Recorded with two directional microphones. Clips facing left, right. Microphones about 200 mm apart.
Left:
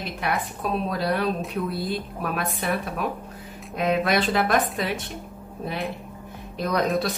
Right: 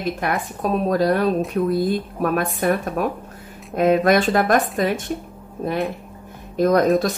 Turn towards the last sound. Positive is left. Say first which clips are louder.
# right 8 dB
turn(degrees=-45)  # may be behind; listen again after turning